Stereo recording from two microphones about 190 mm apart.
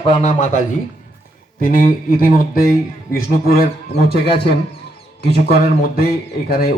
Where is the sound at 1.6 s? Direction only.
50° left (ahead or behind).